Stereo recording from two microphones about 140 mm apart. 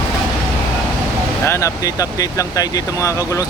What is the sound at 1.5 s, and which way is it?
Speech, 20° left (ahead or behind).